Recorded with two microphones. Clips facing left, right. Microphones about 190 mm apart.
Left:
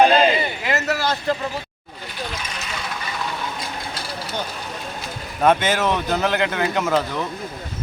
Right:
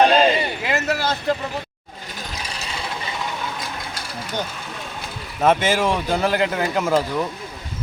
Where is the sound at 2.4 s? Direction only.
35° right (ahead or behind).